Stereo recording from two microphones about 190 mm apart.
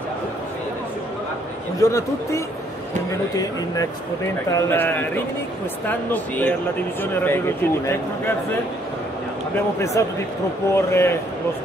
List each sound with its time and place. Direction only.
1.8 s speech: 15° left (ahead or behind)
10.0 s speech: 15° left (ahead or behind)